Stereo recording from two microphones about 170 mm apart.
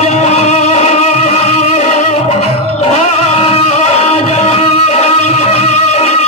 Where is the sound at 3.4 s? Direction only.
35° left (ahead or behind).